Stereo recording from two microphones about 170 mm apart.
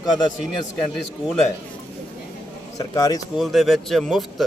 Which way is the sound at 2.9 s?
20° left (ahead or behind).